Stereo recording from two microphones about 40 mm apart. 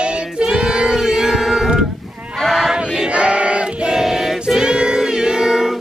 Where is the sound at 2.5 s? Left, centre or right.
Centre.